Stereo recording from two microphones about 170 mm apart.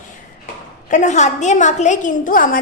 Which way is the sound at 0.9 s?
45° left (ahead or behind).